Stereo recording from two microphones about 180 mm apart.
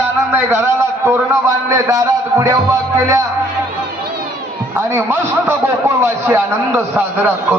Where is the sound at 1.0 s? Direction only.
15° right (ahead or behind).